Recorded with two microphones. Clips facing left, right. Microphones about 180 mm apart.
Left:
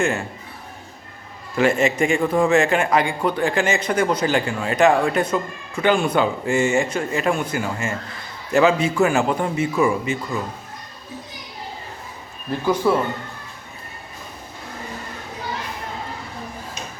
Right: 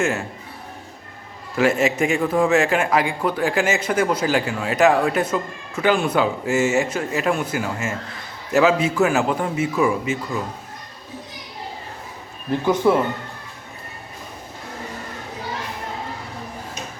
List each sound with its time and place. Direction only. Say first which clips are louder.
0.0 s a man's voice: even; 5° right (ahead or behind)
1.5 s a man's voice: even; 5° right (ahead or behind)
12.5 s speech: right 2 dB; 20° right (ahead or behind)